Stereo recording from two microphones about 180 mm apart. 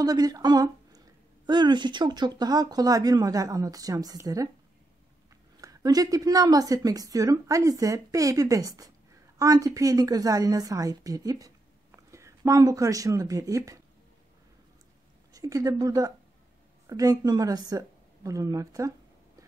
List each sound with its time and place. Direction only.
0.0 s a woman's voice: 20° right (ahead or behind)
5.6 s a woman's voice: 20° right (ahead or behind)
15.3 s a woman's voice: 20° right (ahead or behind)